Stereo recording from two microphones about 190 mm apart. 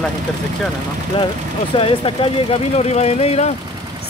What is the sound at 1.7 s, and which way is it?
Speech, 30° left (ahead or behind).